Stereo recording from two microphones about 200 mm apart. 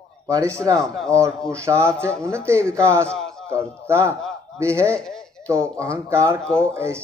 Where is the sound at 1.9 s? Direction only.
5° left (ahead or behind).